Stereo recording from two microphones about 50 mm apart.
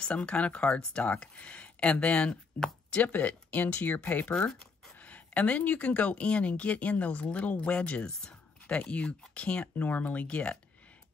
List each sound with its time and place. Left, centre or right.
0.0 s speech: left
3.1 s speech: left